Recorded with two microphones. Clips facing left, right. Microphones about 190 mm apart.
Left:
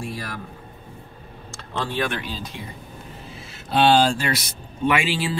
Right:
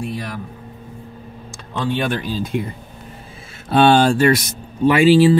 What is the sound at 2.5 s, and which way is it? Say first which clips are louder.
Speech: right 12 dB; 50° right (ahead or behind).